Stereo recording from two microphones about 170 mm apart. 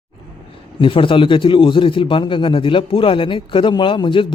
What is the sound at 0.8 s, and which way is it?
A man's voice, 30° left (ahead or behind).